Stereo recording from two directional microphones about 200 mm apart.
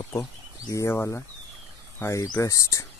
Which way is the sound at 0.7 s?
15° left (ahead or behind).